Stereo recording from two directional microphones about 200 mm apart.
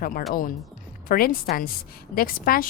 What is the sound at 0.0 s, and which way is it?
A woman's voice, 45° left (ahead or behind).